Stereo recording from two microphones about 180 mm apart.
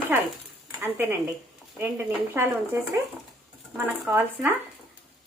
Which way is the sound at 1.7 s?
10° right (ahead or behind).